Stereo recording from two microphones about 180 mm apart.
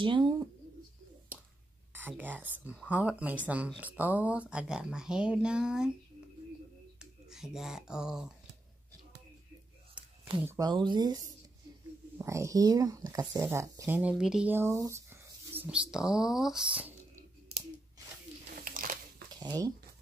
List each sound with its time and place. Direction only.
0.0 s speech: 25° right (ahead or behind)
2.0 s speech: 10° right (ahead or behind)
7.0 s speech: 5° right (ahead or behind)
10.4 s speech: 15° right (ahead or behind)
10.7 s speech: 25° right (ahead or behind)
15.5 s a sound: 10° right (ahead or behind)
18.5 s crumpling: 50° right (ahead or behind)
19.4 s speech: 20° right (ahead or behind)